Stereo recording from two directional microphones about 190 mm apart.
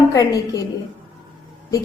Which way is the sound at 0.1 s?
20° left (ahead or behind).